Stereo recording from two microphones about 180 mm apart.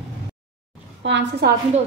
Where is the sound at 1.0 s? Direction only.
80° right.